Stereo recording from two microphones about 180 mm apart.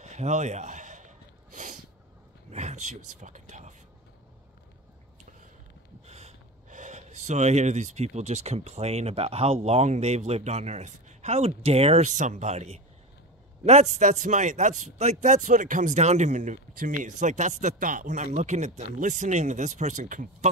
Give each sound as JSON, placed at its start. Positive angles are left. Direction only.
{"t": 0.0, "sound": "a sound", "side_deg": -40}
{"t": 2.5, "sound": "speech", "side_deg": -40}
{"t": 6.0, "sound": "speech", "side_deg": -35}